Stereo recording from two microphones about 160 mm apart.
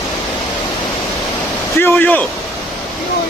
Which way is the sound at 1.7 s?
15° left (ahead or behind).